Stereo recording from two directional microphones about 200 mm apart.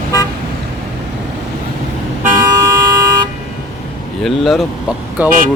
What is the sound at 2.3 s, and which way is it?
Vehicle, 15° right (ahead or behind).